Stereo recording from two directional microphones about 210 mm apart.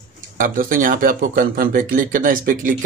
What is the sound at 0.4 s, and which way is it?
Speech, 40° right (ahead or behind).